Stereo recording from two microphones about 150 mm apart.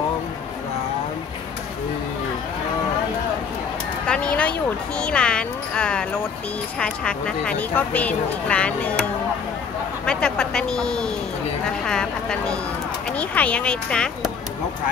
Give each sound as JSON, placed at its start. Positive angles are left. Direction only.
{"t": 4.1, "sound": "speech", "side_deg": 5}
{"t": 10.0, "sound": "speech", "side_deg": 5}